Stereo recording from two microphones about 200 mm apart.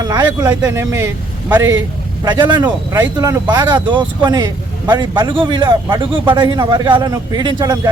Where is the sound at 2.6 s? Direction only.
10° right (ahead or behind).